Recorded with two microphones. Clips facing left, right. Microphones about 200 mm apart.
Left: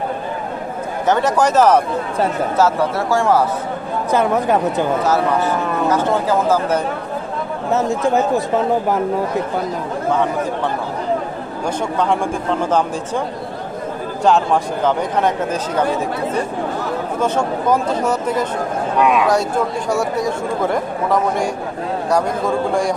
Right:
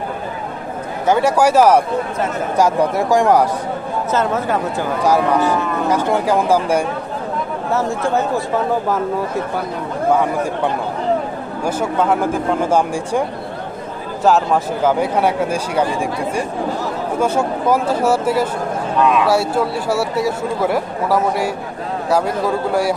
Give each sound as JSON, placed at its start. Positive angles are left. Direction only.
{"t": 1.0, "sound": "speech", "side_deg": -10}
{"t": 4.1, "sound": "speech", "side_deg": 15}
{"t": 5.9, "sound": "speech", "side_deg": -15}
{"t": 7.7, "sound": "speech", "side_deg": 20}
{"t": 11.6, "sound": "speech", "side_deg": -5}
{"t": 14.2, "sound": "speech", "side_deg": -5}
{"t": 18.9, "sound": "speech", "side_deg": 15}
{"t": 19.2, "sound": "a man's voice", "side_deg": -5}